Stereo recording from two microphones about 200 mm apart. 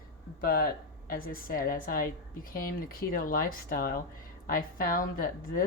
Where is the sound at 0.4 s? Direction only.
45° left (ahead or behind).